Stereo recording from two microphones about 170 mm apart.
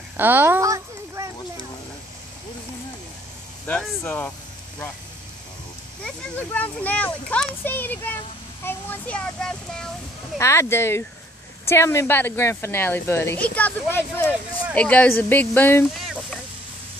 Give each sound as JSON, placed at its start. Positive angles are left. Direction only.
{"t": 0.2, "sound": "a sound", "side_deg": -10}
{"t": 3.6, "sound": "speech", "side_deg": 10}
{"t": 6.0, "sound": "speech", "side_deg": 10}
{"t": 10.3, "sound": "speech", "side_deg": 15}